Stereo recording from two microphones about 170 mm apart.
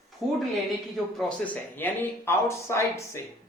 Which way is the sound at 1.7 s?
10° left (ahead or behind).